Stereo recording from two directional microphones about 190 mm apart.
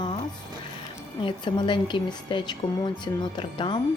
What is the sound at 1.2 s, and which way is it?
Speech, 25° left (ahead or behind).